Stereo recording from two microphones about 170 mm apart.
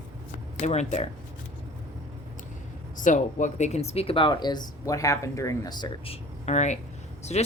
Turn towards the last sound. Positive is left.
turn(degrees=40)  # may be behind; listen again after turning